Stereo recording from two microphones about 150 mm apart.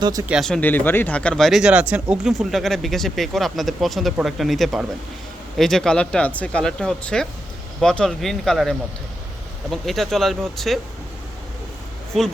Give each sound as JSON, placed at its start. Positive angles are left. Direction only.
{"t": 0.0, "sound": "speech", "side_deg": -25}
{"t": 0.3, "sound": "speech", "side_deg": 0}